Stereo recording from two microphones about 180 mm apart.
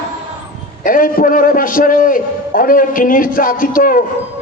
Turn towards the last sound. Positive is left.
turn(degrees=50)  # may be behind; listen again after turning